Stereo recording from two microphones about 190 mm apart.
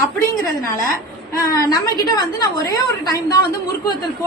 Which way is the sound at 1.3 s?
20° left (ahead or behind).